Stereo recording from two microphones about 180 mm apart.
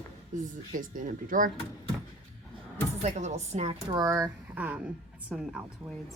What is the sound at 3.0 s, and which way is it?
Speech, 40° right (ahead or behind).